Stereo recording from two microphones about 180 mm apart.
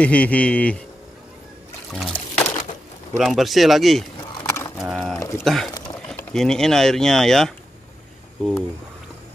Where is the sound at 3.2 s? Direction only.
Centre (ahead or behind).